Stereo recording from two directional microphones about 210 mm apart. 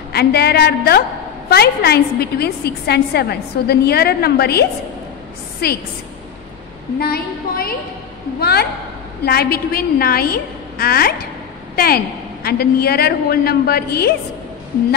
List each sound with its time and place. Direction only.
0.1 s a woman's voice: 50° left (ahead or behind)
7.0 s a woman's voice: 45° left (ahead or behind)